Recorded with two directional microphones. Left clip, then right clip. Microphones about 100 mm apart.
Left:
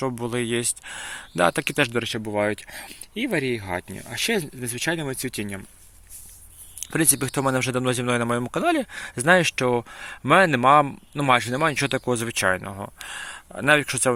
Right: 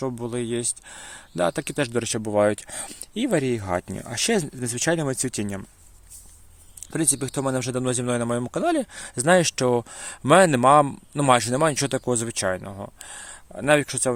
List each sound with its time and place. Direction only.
0.0 s speech: 5° right (ahead or behind)
2.0 s speech: 50° right (ahead or behind)
2.2 s speech: 70° right (ahead or behind)
5.4 s speech: 40° right (ahead or behind)
6.7 s speech: centre (ahead or behind); by 12.5 s 15° right (ahead or behind)
12.5 s speech: 5° right (ahead or behind)